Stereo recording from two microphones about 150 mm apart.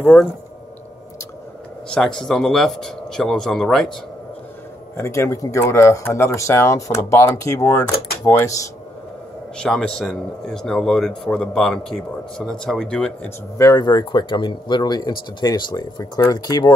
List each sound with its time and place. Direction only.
0.0 s speech: 10° left (ahead or behind)
1.9 s speech: 5° left (ahead or behind)
4.9 s speech: 20° left (ahead or behind)
9.6 s speech: 5° left (ahead or behind)
13.6 s speech: 25° left (ahead or behind)